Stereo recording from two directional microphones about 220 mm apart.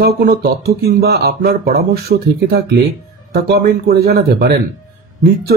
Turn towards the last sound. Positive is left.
turn(degrees=-45)  # may be behind; listen again after turning